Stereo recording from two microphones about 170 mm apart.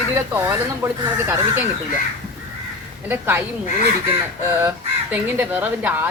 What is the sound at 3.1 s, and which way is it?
Speech, 10° right (ahead or behind).